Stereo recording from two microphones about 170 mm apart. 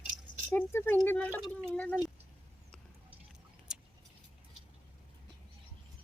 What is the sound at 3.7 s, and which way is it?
Vehicle, 5° right (ahead or behind).